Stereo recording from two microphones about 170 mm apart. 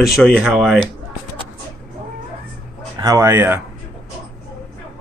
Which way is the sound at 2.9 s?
20° right (ahead or behind).